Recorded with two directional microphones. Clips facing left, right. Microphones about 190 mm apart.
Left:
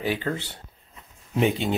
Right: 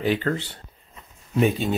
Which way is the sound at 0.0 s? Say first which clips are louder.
Right 4 dB; 10° left (ahead or behind).